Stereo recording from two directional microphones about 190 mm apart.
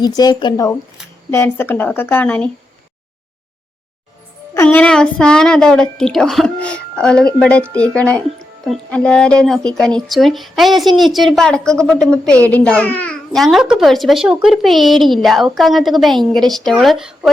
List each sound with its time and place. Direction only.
0.0 s a woman's voice: 20° left (ahead or behind)
4.5 s speech: 10° left (ahead or behind)